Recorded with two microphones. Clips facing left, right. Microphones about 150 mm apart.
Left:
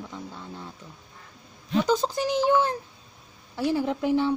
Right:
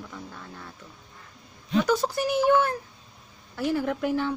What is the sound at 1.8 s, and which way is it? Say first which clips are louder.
Speech: left 2 dB; 20° left (ahead or behind).